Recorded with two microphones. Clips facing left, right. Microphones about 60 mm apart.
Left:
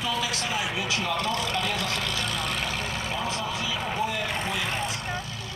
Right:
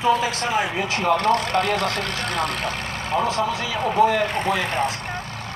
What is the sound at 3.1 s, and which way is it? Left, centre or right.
Speech, right.